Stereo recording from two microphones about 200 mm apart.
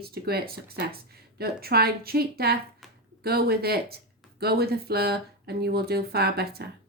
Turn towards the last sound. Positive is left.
turn(degrees=-50)  # may be behind; listen again after turning